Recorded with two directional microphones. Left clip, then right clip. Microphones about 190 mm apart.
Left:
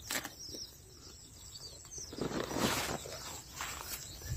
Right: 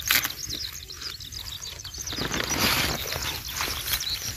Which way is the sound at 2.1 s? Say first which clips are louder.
Right 10 dB; 35° right (ahead or behind).